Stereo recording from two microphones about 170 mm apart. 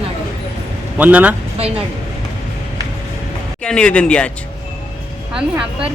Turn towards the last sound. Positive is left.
turn(degrees=-5)  # may be behind; listen again after turning